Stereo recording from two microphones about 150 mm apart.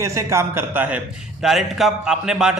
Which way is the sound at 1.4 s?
Centre (ahead or behind).